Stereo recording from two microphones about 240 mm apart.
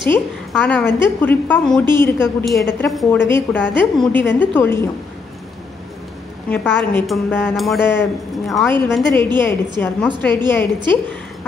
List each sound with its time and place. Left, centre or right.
0.1 s a woman's voice: centre
6.5 s a woman's voice: centre